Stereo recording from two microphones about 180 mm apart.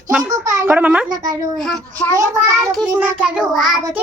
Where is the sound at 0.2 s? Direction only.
20° right (ahead or behind).